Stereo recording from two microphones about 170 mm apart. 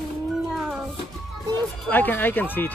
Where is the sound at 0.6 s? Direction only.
5° right (ahead or behind).